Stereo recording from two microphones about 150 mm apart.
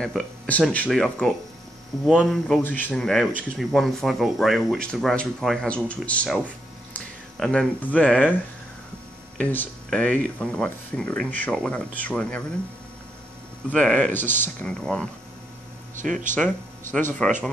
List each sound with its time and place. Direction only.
0.0 s speech: 5° left (ahead or behind)
9.4 s speech: 10° left (ahead or behind)
13.7 s speech: 10° left (ahead or behind)
16.0 s speech: 60° right (ahead or behind)
16.9 s speech: 5° left (ahead or behind)